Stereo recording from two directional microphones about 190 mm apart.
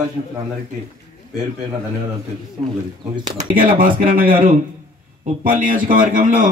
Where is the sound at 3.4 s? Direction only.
45° right (ahead or behind).